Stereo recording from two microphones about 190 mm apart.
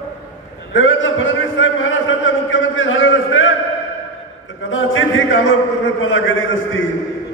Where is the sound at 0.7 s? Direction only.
90° left.